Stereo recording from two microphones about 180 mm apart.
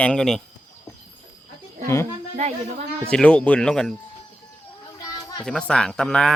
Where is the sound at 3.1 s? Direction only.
5° left (ahead or behind).